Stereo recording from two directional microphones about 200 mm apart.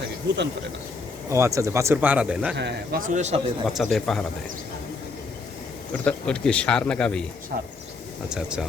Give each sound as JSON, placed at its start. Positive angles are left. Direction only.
{"t": 1.3, "sound": "speech", "side_deg": -15}
{"t": 2.6, "sound": "a man's voice", "side_deg": -60}
{"t": 3.1, "sound": "a man's voice", "side_deg": -35}
{"t": 3.7, "sound": "a man's voice", "side_deg": 0}
{"t": 6.1, "sound": "a man's voice", "side_deg": 5}
{"t": 7.5, "sound": "speech", "side_deg": -50}
{"t": 8.3, "sound": "a man's voice", "side_deg": -5}